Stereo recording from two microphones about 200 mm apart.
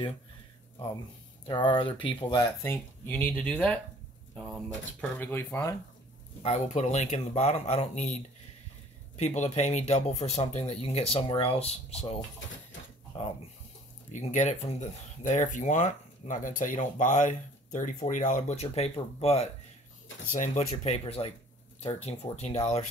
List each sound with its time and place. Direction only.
1.5 s speech: 20° left (ahead or behind)
2.6 s speech: 10° left (ahead or behind)
6.4 s speech: 35° left (ahead or behind)